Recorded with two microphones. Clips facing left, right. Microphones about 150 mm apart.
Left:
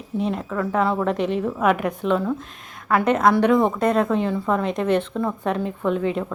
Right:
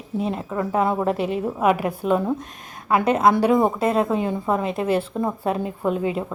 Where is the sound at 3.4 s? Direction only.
10° right (ahead or behind).